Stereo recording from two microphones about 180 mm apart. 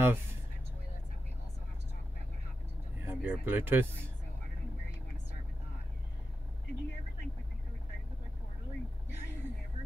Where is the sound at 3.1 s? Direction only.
10° right (ahead or behind).